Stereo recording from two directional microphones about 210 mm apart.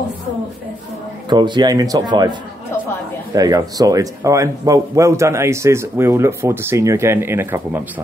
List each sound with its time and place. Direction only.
1.3 s speech: 20° right (ahead or behind)
3.3 s speech: 15° right (ahead or behind)